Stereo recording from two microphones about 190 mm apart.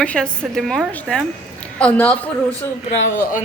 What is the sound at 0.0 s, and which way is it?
A woman's voice, 5° left (ahead or behind).